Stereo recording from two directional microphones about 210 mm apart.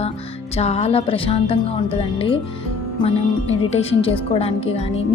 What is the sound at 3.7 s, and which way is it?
Speech, 30° left (ahead or behind).